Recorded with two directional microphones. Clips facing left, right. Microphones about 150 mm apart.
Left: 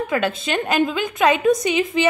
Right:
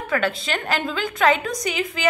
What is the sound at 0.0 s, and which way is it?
A woman's voice, 20° left (ahead or behind).